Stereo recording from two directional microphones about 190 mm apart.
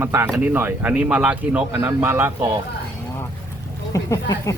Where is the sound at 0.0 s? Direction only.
15° right (ahead or behind).